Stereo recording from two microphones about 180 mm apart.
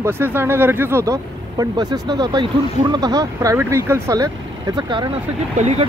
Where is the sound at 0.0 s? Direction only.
15° right (ahead or behind).